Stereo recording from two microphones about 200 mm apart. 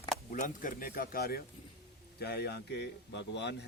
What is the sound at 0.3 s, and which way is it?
Speech, 40° left (ahead or behind).